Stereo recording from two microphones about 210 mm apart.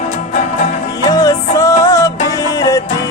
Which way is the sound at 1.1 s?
15° left (ahead or behind).